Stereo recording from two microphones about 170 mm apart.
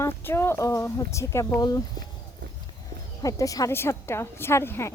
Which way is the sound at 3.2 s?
20° left (ahead or behind).